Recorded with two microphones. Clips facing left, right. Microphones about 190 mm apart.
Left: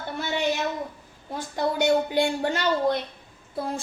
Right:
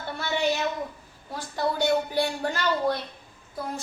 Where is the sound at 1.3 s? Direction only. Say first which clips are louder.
Left 2 dB; 20° left (ahead or behind).